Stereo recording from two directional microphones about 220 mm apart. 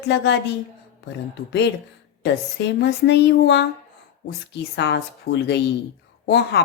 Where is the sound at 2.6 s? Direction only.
55° left (ahead or behind).